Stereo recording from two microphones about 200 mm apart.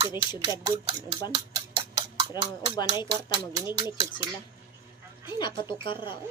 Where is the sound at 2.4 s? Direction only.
20° left (ahead or behind).